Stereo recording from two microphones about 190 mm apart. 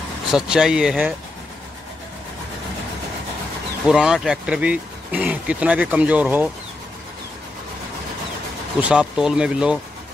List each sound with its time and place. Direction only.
0.3 s speech: 5° right (ahead or behind)
3.8 s speech: centre (ahead or behind)
8.8 s speech: 5° right (ahead or behind)